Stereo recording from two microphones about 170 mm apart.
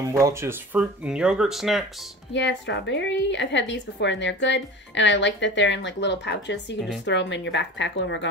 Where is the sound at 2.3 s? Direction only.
90° left.